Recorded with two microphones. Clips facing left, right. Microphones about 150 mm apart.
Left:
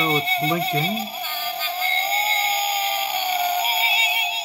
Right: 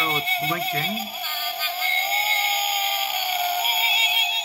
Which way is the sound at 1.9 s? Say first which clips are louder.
Left 3 dB; 35° left (ahead or behind).